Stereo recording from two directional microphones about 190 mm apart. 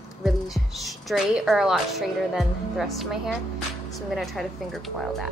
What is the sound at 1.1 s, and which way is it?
A woman's voice, centre (ahead or behind).